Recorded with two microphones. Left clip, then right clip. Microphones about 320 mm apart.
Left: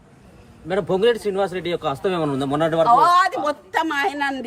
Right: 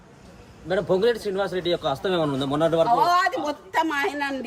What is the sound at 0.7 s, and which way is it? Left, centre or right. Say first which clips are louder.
A man's voice: left 3 dB; left.